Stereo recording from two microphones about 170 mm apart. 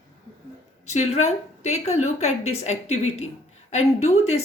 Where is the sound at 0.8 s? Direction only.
40° left (ahead or behind).